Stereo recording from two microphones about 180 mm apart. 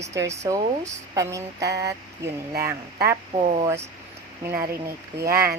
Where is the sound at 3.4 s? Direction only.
35° right (ahead or behind).